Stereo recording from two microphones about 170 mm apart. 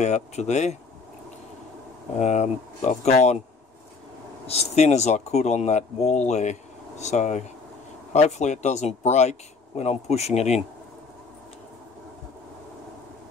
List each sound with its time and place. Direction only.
0.0 s speech: 40° left (ahead or behind)
2.1 s speech: 40° left (ahead or behind)
4.5 s speech: 40° left (ahead or behind)